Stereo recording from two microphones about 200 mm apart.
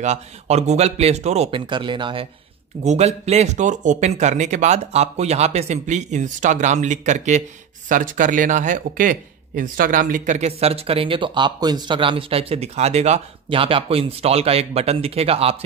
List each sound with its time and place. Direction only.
0.0 s speech: 35° right (ahead or behind)